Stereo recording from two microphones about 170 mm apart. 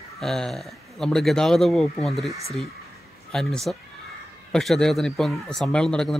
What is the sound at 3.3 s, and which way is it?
Speech, 5° left (ahead or behind).